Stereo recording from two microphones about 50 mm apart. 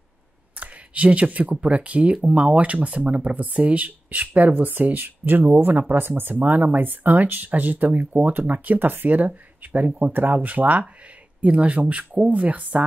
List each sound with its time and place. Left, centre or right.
0.6 s speech: right